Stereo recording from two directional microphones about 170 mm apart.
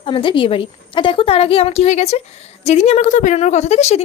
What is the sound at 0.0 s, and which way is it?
A woman's voice, 30° left (ahead or behind).